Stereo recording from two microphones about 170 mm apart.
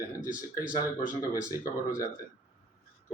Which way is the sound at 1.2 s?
20° left (ahead or behind).